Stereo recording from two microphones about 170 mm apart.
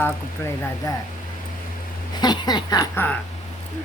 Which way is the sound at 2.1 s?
25° left (ahead or behind).